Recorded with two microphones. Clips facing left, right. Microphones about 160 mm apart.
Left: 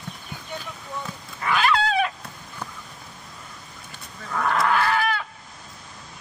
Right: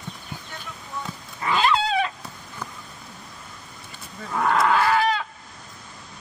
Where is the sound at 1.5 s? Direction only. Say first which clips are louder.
Even; 20° right (ahead or behind).